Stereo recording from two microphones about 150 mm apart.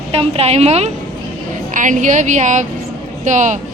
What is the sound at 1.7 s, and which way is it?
A woman's voice, 60° right (ahead or behind).